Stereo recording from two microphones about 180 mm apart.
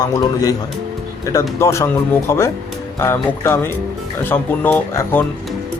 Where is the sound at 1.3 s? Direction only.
15° left (ahead or behind).